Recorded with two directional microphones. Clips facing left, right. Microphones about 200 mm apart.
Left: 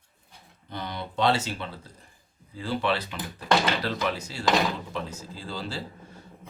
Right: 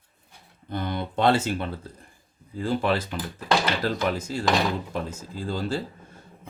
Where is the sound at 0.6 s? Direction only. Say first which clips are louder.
Right 6 dB; 50° right (ahead or behind).